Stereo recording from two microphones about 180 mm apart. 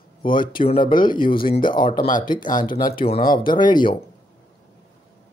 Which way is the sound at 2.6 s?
50° left (ahead or behind).